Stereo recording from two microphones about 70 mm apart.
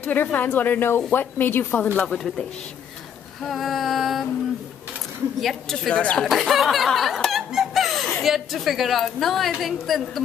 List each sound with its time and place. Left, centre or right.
0.1 s a woman's voice: left
2.0 s speech: centre
3.4 s a sound: centre
5.4 s a woman's voice: centre